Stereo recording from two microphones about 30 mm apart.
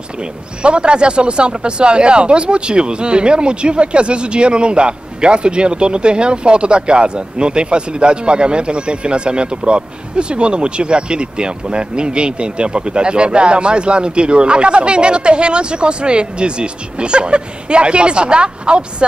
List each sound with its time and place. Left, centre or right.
0.2 s speech: right